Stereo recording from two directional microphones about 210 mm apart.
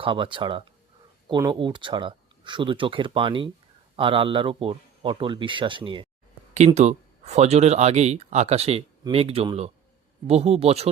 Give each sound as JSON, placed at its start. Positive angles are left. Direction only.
{"t": 0.0, "sound": "speech", "side_deg": -25}